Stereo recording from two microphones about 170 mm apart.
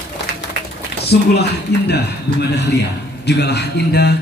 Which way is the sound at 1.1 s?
75° left (ahead or behind).